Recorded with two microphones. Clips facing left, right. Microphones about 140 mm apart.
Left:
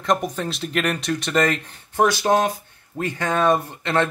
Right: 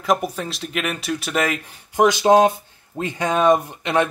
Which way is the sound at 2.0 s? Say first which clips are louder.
Right 6 dB; 20° right (ahead or behind).